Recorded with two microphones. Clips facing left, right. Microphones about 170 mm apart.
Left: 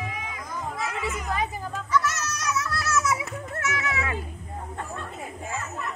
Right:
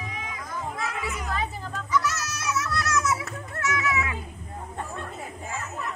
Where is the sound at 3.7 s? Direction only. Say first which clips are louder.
Right 3 dB; 30° left (ahead or behind).